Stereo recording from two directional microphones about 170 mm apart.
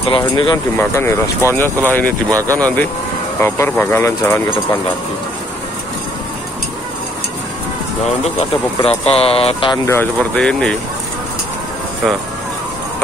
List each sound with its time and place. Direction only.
0.1 s speech: 25° left (ahead or behind)
0.7 s speech: 15° left (ahead or behind)
8.8 s speech: 35° left (ahead or behind)
9.8 s speech: 10° left (ahead or behind)